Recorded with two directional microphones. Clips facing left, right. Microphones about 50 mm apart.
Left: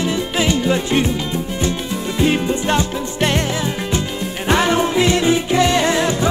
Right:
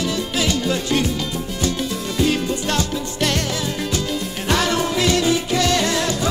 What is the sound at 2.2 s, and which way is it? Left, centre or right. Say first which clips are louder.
Music: left 3 dB; left.